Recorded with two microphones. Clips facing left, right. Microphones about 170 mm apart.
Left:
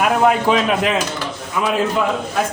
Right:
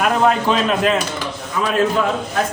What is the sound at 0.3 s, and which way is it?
Speech, 15° left (ahead or behind).